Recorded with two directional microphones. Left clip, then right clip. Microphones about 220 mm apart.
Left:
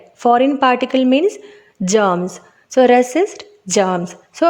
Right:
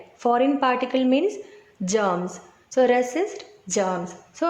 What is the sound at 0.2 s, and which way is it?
A woman's voice, 35° left (ahead or behind).